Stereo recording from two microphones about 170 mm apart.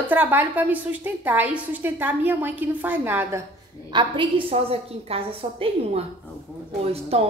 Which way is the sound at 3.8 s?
25° right (ahead or behind).